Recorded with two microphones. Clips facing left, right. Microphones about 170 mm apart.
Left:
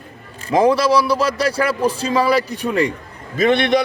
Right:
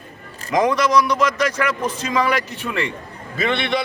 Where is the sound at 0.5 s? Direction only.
30° left (ahead or behind).